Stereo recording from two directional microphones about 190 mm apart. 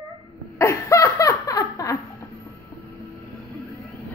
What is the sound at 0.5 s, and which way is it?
Laughter, 15° left (ahead or behind).